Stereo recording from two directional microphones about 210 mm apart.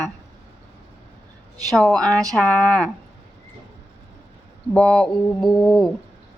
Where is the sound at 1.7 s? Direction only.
Centre (ahead or behind).